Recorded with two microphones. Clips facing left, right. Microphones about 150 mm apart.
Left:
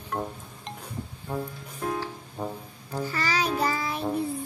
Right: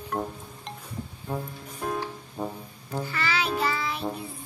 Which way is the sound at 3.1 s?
40° left (ahead or behind).